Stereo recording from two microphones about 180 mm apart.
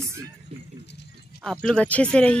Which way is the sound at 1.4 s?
5° left (ahead or behind).